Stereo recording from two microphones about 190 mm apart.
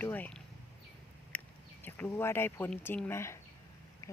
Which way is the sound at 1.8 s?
10° left (ahead or behind).